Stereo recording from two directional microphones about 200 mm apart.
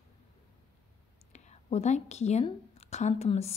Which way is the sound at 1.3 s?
35° left (ahead or behind).